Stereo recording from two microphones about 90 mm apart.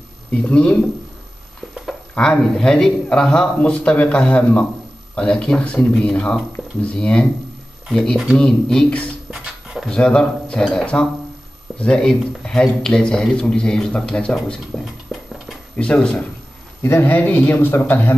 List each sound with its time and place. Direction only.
0.4 s speech: 15° left (ahead or behind)
2.1 s speech: 5° left (ahead or behind)
9.3 s a sound: 10° right (ahead or behind)
9.8 s speech: 10° left (ahead or behind)
15.8 s speech: 10° left (ahead or behind)
16.8 s speech: 25° left (ahead or behind)